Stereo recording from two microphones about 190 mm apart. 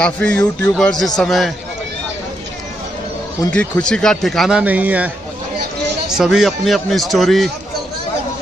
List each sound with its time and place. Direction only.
0.0 s speech: 5° left (ahead or behind)
3.5 s speech: 5° left (ahead or behind)
6.1 s speech: centre (ahead or behind)